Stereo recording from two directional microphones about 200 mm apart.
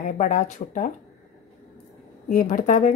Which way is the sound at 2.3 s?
40° left (ahead or behind).